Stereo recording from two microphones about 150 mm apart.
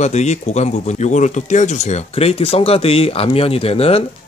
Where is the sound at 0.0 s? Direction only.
50° left (ahead or behind).